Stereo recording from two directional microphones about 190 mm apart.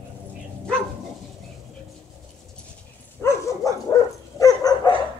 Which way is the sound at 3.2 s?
15° left (ahead or behind).